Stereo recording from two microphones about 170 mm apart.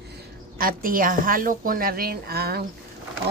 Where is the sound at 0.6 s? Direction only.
55° right (ahead or behind).